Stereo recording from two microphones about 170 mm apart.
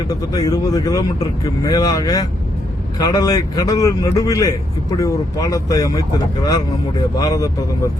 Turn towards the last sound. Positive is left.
turn(degrees=20)  # may be behind; listen again after turning